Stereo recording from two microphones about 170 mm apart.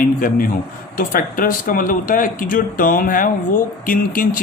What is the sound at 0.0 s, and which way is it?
A man's voice, 55° left (ahead or behind).